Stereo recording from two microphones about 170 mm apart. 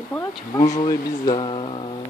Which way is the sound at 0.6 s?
20° left (ahead or behind).